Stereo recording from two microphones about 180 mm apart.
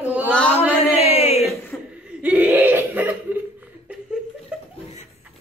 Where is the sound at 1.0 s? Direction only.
35° left (ahead or behind).